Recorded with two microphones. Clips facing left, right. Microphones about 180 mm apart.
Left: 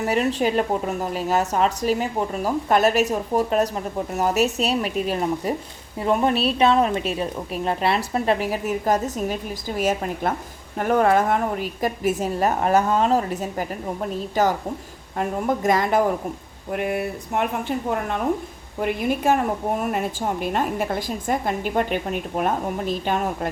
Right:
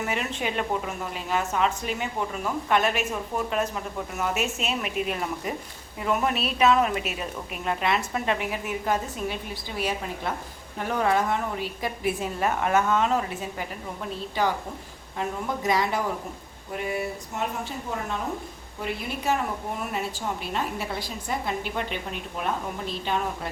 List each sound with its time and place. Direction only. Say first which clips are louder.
0.1 s a woman's voice: left 8 dB; 35° left (ahead or behind)
16.7 s a woman's voice: left 5 dB; 60° left (ahead or behind)